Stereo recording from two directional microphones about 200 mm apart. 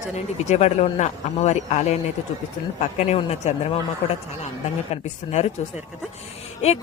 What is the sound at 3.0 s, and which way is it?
Speech, 35° left (ahead or behind).